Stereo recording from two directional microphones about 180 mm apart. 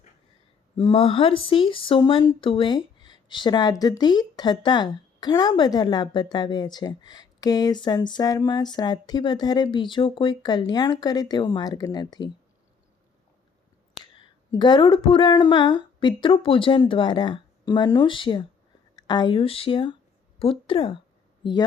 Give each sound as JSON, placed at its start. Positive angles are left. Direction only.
{"t": 0.8, "sound": "speech", "side_deg": 30}
{"t": 14.2, "sound": "speech", "side_deg": 25}